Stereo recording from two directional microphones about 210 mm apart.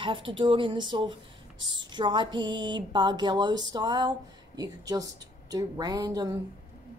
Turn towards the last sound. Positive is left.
turn(degrees=-20)  # may be behind; listen again after turning